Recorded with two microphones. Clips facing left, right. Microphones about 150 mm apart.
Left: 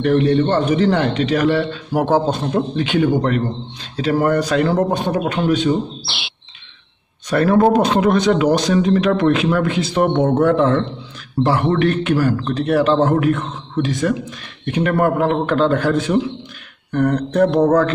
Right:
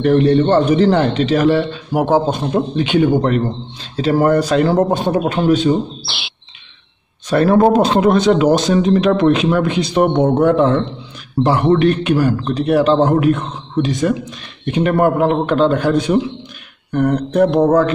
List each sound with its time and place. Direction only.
0.0 s a man's voice: 35° right (ahead or behind)
7.2 s speech: 30° right (ahead or behind)
16.9 s mantra: 10° right (ahead or behind)